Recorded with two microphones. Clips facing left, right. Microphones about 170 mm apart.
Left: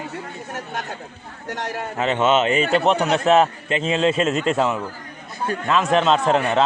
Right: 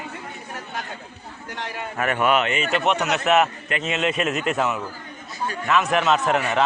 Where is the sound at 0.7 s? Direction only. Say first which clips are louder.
Left 3 dB; 45° left (ahead or behind).